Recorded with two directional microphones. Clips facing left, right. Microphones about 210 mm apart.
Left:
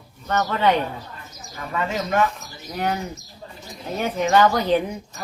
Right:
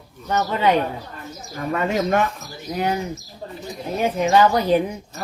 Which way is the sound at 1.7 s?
50° right (ahead or behind).